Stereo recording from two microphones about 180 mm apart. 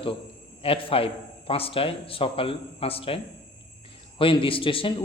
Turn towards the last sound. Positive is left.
turn(degrees=30)  # may be behind; listen again after turning